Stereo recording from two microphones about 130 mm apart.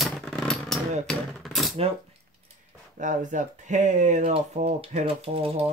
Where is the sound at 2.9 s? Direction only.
75° right (ahead or behind); by 5.0 s 60° right (ahead or behind).